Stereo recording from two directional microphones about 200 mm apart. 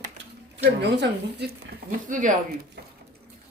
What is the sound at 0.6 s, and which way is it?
Speech, 55° right (ahead or behind).